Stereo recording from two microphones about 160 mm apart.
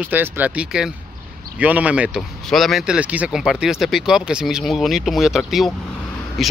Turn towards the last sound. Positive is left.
turn(degrees=0)  # may be behind; listen again after turning